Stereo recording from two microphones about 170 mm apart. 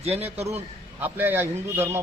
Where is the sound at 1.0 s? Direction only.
10° right (ahead or behind).